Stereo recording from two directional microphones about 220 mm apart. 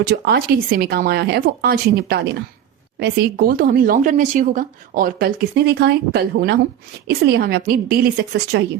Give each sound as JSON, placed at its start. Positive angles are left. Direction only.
{"t": 0.0, "sound": "speech", "side_deg": -45}